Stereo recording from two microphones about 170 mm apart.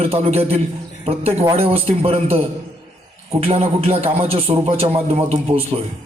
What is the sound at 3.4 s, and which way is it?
Speech, 35° right (ahead or behind).